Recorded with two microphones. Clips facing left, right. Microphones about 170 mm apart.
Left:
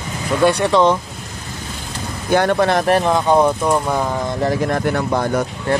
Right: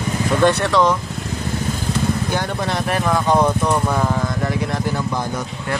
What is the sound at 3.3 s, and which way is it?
Speech, 10° left (ahead or behind).